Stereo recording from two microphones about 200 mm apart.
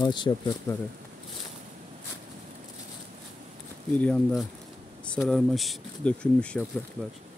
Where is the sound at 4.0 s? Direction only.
5° left (ahead or behind).